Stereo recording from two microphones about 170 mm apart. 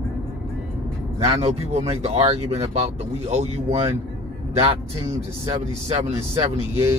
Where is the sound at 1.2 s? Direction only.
35° right (ahead or behind).